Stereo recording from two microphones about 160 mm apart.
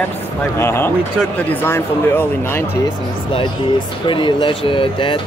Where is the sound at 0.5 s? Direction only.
15° left (ahead or behind).